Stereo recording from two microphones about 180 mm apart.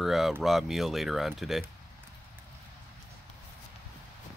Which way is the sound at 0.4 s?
Centre (ahead or behind).